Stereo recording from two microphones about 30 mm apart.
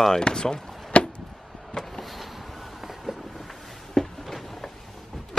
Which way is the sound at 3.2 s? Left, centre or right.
Centre.